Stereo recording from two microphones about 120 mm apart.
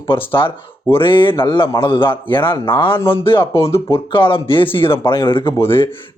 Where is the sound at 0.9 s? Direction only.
45° left (ahead or behind).